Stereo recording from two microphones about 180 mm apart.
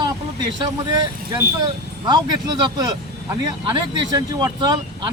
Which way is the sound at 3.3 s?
25° right (ahead or behind).